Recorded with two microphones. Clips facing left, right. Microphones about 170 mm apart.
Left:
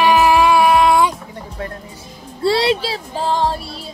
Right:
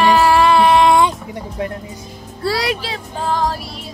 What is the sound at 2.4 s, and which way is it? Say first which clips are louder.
Music: left 4 dB; 25° left (ahead or behind).